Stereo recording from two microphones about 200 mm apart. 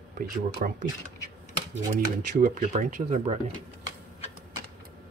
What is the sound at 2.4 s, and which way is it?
Speech, 40° right (ahead or behind).